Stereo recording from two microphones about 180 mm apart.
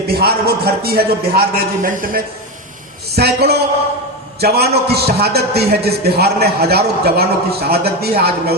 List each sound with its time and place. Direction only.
0.1 s a man's voice: 60° right (ahead or behind)